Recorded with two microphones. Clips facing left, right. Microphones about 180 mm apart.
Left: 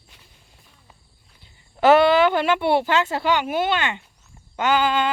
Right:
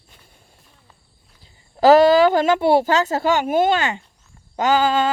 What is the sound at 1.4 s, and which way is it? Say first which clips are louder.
Speech: right 3 dB; 35° right (ahead or behind).